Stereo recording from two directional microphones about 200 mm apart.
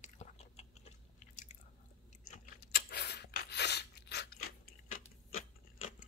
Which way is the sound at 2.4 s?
50° left (ahead or behind).